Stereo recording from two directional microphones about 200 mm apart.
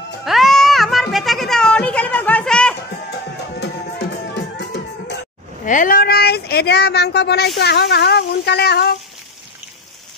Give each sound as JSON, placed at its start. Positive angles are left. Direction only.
{"t": 0.2, "sound": "music", "side_deg": 0}
{"t": 3.1, "sound": "music", "side_deg": 55}
{"t": 5.7, "sound": "speech", "side_deg": 45}